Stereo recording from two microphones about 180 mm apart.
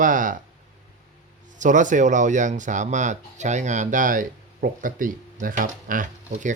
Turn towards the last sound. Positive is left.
turn(degrees=-45)  # may be behind; listen again after turning